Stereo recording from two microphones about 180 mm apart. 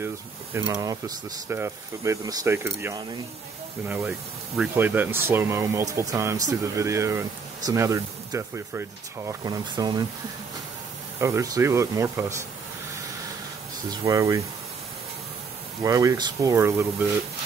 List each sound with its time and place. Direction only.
0.0 s speech: 15° right (ahead or behind)
11.1 s speech: 15° right (ahead or behind)
13.8 s speech: 20° right (ahead or behind)
15.8 s speech: 20° right (ahead or behind)